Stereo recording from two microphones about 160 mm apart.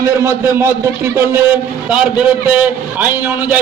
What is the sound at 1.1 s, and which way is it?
Speech, 20° right (ahead or behind).